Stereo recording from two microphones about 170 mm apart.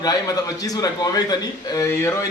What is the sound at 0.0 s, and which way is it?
A man's voice, 20° left (ahead or behind).